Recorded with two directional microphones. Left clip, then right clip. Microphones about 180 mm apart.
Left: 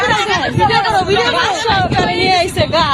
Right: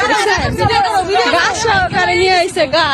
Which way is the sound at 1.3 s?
45° right (ahead or behind).